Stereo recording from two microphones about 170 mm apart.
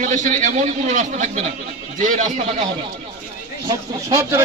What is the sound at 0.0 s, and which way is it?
A man's voice, 45° right (ahead or behind).